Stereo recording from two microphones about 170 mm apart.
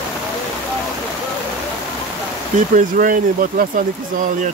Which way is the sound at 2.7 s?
50° right (ahead or behind).